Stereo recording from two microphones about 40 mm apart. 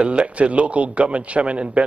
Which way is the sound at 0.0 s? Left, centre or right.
Right.